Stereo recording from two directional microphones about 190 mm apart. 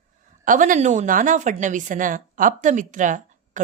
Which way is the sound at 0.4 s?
45° right (ahead or behind).